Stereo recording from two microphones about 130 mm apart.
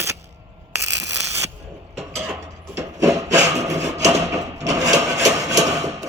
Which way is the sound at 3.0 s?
25° right (ahead or behind).